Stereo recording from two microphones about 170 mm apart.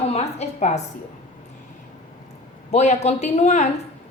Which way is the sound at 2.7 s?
40° left (ahead or behind).